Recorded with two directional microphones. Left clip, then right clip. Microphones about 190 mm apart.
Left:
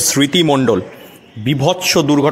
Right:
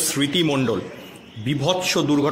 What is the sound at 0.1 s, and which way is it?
A man's voice, 35° left (ahead or behind).